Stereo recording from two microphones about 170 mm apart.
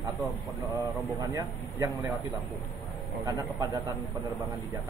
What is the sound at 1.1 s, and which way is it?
Speech, 25° right (ahead or behind).